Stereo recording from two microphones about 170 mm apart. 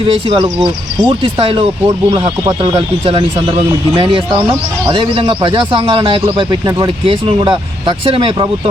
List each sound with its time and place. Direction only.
0.0 s speech: 30° right (ahead or behind)